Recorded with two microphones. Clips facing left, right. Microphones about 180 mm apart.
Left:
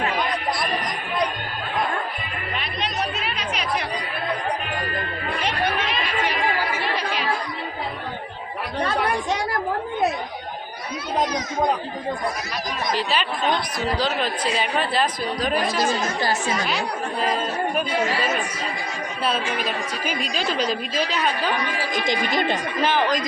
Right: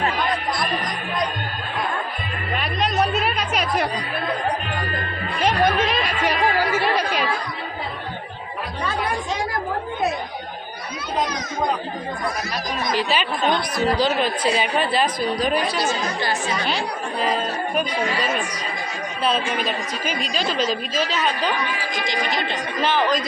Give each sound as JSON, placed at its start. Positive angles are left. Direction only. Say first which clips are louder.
{"t": 2.6, "sound": "music", "louder": "right 6 dB", "side_deg": -45}
{"t": 5.4, "sound": "chatter", "louder": "right 7 dB", "side_deg": -40}
{"t": 12.9, "sound": "speech", "louder": "right 2 dB", "side_deg": -5}
{"t": 15.6, "sound": "speech", "louder": "left 1 dB", "side_deg": 40}
{"t": 20.1, "sound": "a woman's voice", "louder": "right 1 dB", "side_deg": 10}
{"t": 21.9, "sound": "speech", "louder": "left 3 dB", "side_deg": 50}
{"t": 22.8, "sound": "a woman's voice", "louder": "right 2 dB", "side_deg": 10}